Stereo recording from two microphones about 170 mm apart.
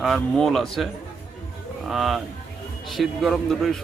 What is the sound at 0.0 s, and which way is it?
Speech, centre (ahead or behind).